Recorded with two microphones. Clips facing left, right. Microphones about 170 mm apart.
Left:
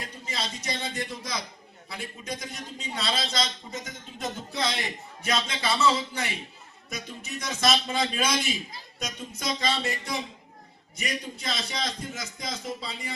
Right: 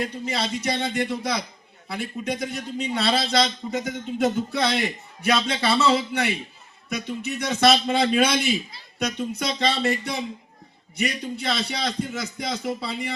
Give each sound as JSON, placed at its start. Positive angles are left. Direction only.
{"t": 0.0, "sound": "a man's voice", "side_deg": -60}